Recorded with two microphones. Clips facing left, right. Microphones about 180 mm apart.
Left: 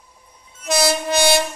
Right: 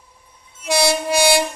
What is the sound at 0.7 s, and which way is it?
Train, 10° right (ahead or behind).